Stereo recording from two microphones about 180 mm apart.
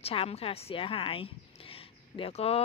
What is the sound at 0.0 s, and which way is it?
A woman's voice, 30° left (ahead or behind).